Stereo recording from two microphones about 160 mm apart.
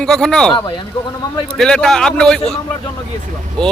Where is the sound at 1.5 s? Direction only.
5° left (ahead or behind).